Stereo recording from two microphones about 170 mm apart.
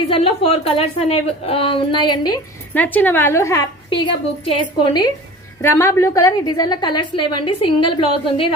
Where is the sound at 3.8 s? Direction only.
30° left (ahead or behind).